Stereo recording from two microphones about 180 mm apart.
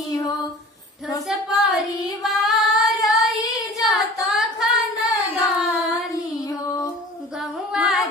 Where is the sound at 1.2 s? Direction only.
Centre (ahead or behind).